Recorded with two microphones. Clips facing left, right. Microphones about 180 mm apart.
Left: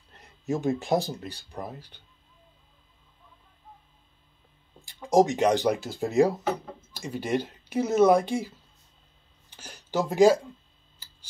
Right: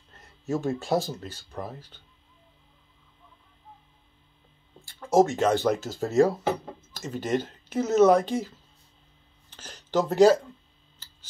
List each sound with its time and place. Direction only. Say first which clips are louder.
0.5 s speech: left 1 dB; 15° left (ahead or behind)
4.8 s speech: even; 15° left (ahead or behind)